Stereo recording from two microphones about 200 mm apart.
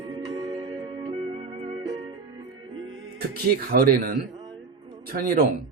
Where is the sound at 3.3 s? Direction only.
50° right (ahead or behind).